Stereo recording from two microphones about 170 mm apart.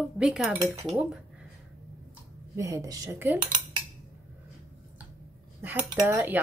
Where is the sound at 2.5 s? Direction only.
20° right (ahead or behind).